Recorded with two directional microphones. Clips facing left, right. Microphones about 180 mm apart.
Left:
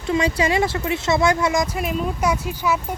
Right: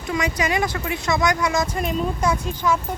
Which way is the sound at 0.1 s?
30° left (ahead or behind).